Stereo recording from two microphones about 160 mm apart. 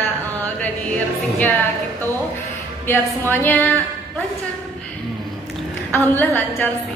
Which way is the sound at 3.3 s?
15° left (ahead or behind).